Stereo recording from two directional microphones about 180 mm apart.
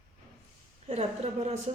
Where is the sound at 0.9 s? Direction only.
35° right (ahead or behind).